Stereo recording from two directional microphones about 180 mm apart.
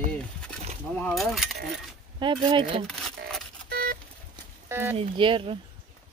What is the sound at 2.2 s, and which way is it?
Speech, 25° right (ahead or behind).